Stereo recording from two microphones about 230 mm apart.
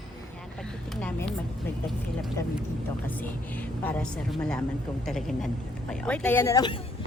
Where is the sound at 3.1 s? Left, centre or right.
Centre.